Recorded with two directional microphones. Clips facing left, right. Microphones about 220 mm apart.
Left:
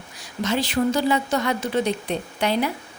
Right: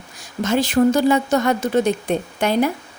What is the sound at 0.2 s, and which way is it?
A woman's voice, 45° right (ahead or behind).